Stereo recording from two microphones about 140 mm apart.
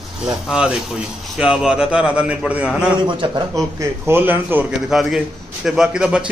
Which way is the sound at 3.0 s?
30° right (ahead or behind).